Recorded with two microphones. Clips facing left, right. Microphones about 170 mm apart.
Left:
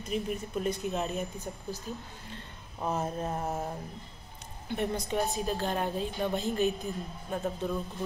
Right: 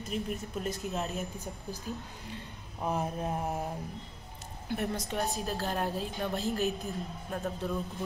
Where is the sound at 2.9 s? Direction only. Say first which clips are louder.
Even; 10° right (ahead or behind).